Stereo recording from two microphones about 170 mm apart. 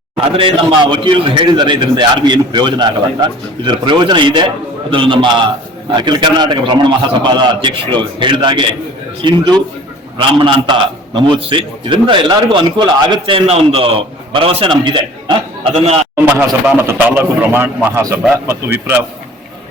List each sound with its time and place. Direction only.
0.3 s a man's voice: 30° right (ahead or behind)
16.1 s a man's voice: 15° right (ahead or behind)